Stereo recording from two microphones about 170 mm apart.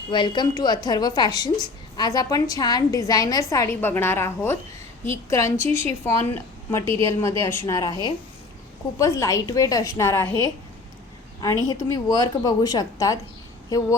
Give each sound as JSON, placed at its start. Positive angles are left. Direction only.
{"t": 0.1, "sound": "a woman's voice", "side_deg": 25}
{"t": 9.0, "sound": "a woman's voice", "side_deg": 20}